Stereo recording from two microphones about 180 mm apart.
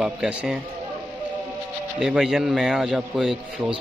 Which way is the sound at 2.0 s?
5° right (ahead or behind).